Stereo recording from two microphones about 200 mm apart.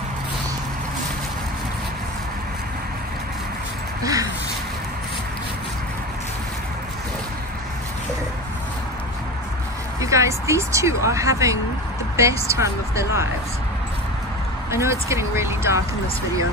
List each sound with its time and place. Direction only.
4.0 s a sound: 15° right (ahead or behind)
9.9 s speech: 15° right (ahead or behind)
14.7 s speech: 15° right (ahead or behind)